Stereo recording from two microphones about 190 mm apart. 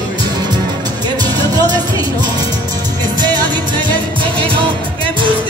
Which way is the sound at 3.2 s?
20° right (ahead or behind).